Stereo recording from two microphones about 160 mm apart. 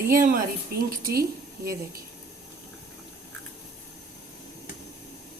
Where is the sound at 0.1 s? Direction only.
60° right (ahead or behind).